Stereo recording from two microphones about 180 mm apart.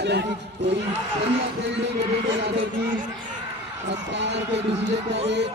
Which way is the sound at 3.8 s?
75° right (ahead or behind).